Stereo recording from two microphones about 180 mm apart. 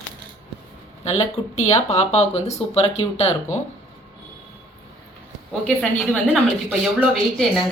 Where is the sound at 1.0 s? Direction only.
35° left (ahead or behind).